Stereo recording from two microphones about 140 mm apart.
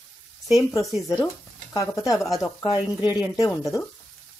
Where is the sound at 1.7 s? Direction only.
25° left (ahead or behind).